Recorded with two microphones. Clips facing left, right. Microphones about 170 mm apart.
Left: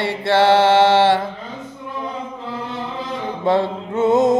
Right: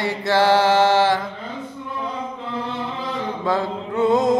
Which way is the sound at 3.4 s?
25° left (ahead or behind).